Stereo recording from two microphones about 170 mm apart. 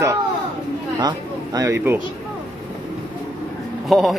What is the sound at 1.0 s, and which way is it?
Speech, 20° right (ahead or behind).